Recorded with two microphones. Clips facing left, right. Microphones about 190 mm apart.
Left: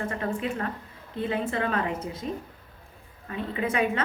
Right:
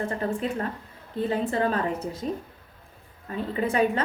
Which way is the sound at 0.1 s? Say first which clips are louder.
Right 2 dB; 35° right (ahead or behind).